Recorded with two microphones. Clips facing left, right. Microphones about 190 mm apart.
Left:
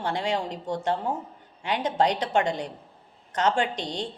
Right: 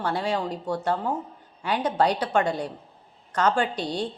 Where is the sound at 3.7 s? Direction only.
5° right (ahead or behind).